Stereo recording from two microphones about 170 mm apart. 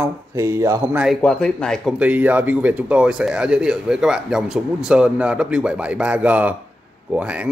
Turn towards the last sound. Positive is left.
turn(degrees=-5)  # may be behind; listen again after turning